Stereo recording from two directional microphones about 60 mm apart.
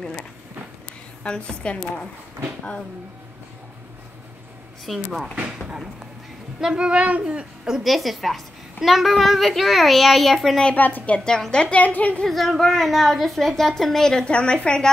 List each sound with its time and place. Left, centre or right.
1.2 s a woman's voice: centre
4.8 s a woman's voice: centre
6.6 s a woman's voice: centre
10.6 s a child's voice: left
11.1 s a woman's voice: centre
12.3 s a woman's voice: centre